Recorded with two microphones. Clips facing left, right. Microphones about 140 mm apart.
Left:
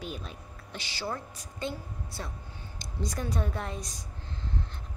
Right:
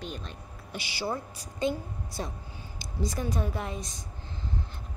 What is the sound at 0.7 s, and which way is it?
A woman's voice, 10° right (ahead or behind).